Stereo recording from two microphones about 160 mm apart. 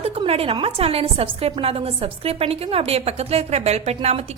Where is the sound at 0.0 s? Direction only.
35° right (ahead or behind).